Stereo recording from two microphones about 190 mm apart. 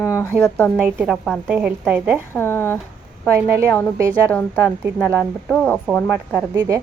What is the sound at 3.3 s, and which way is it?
Speech, 15° right (ahead or behind).